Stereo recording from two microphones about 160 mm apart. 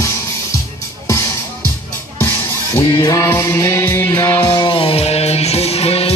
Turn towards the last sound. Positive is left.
turn(degrees=40)  # may be behind; listen again after turning